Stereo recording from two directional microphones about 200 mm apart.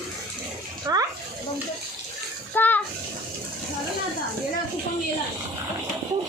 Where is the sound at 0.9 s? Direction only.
20° right (ahead or behind).